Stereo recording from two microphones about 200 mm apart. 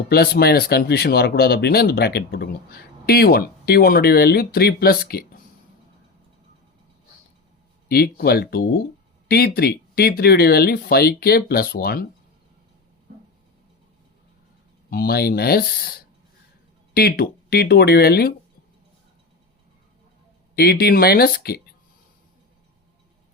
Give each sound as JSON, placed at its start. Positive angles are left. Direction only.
{"t": 0.1, "sound": "speech", "side_deg": 50}
{"t": 7.9, "sound": "speech", "side_deg": 50}
{"t": 14.8, "sound": "speech", "side_deg": 50}
{"t": 20.6, "sound": "speech", "side_deg": 50}